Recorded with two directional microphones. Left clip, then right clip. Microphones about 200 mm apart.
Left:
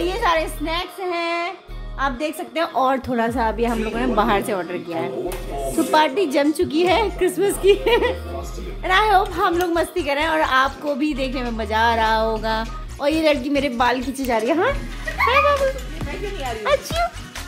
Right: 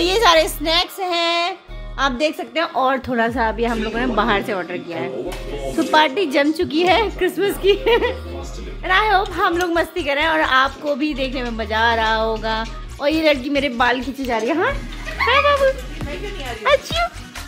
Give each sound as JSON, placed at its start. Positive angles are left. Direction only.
{"t": 0.0, "sound": "a sound", "side_deg": -55}
{"t": 2.0, "sound": "a woman's voice", "side_deg": -45}
{"t": 2.5, "sound": "a woman's voice", "side_deg": 0}
{"t": 16.6, "sound": "speech", "side_deg": -10}